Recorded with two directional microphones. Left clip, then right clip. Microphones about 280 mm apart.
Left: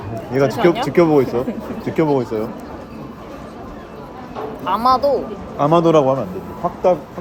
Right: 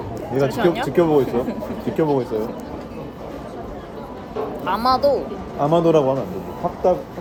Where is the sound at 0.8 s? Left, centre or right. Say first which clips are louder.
Left 3 dB; left.